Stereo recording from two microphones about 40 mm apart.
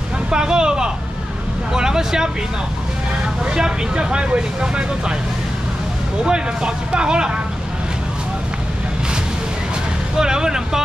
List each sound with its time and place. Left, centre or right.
0.3 s vehicle: centre
3.4 s speech: right
6.2 s speech: right
10.1 s speech: centre